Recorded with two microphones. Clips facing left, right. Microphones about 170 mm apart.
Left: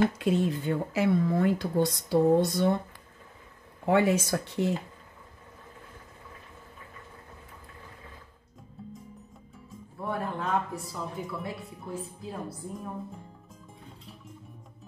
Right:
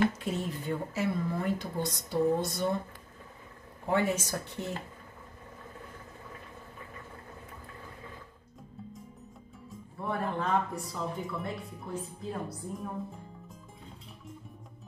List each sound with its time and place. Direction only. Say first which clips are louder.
0.2 s speech: left 8 dB; 70° left (ahead or behind)
3.8 s speech: left 5 dB; 70° left (ahead or behind)
9.7 s speech: left 1 dB; centre (ahead or behind)